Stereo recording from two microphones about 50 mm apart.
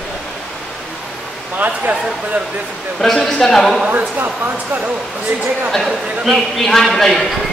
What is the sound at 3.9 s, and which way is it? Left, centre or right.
Speech, right.